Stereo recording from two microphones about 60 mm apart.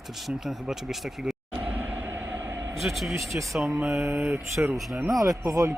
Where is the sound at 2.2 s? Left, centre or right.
Right.